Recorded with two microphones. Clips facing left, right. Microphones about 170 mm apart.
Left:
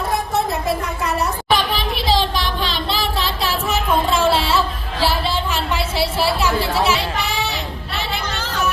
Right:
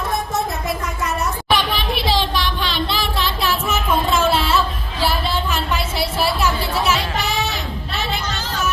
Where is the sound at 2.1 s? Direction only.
40° left (ahead or behind).